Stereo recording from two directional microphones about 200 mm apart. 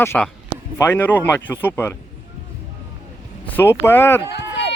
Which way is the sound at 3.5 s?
10° left (ahead or behind).